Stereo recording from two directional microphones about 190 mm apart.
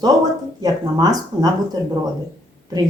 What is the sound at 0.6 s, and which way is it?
Speech, 20° right (ahead or behind).